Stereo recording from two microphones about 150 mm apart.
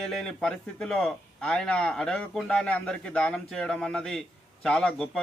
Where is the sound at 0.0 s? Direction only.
5° left (ahead or behind).